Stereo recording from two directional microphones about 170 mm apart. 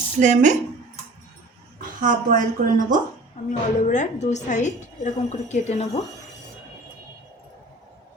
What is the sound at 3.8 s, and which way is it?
A woman's voice, 45° left (ahead or behind).